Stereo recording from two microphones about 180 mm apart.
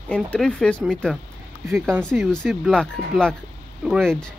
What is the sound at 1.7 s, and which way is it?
Speech, 10° right (ahead or behind).